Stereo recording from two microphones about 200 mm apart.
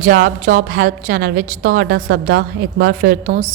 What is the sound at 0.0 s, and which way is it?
A woman's voice, 40° right (ahead or behind).